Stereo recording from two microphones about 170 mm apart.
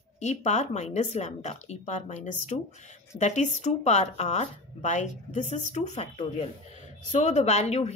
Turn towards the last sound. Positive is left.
turn(degrees=40)  # may be behind; listen again after turning